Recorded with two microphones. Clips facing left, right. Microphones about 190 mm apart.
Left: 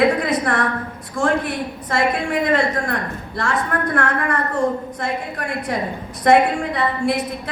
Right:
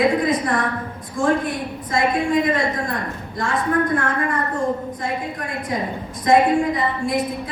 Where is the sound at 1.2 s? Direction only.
70° left (ahead or behind).